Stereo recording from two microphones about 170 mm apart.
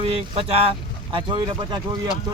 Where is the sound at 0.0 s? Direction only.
35° right (ahead or behind).